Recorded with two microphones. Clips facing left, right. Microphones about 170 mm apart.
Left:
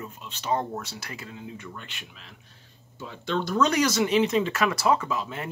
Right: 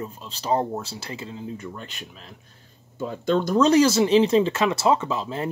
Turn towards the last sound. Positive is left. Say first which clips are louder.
# right 4 dB
turn(degrees=-30)  # may be behind; listen again after turning